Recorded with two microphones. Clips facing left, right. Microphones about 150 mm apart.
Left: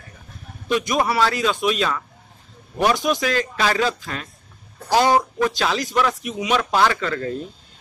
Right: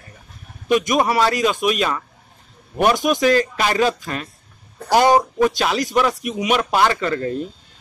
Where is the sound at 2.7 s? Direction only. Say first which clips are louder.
Right 2 dB; 55° right (ahead or behind).